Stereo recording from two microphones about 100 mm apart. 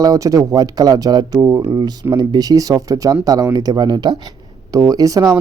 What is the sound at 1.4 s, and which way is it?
Speech, 30° right (ahead or behind).